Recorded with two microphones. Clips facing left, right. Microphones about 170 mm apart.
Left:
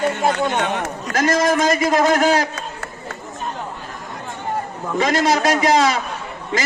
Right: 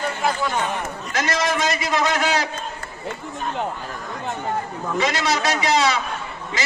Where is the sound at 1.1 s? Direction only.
45° left (ahead or behind).